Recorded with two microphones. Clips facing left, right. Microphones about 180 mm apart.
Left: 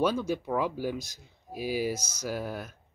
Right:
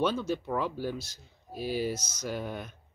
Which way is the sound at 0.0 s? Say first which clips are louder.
Left 2 dB; 10° left (ahead or behind).